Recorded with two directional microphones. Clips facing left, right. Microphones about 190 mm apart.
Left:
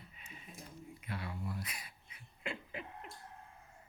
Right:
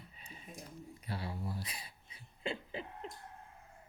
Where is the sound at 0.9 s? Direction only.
35° right (ahead or behind).